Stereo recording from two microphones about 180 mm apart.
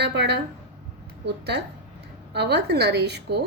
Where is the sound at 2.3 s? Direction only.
70° right (ahead or behind).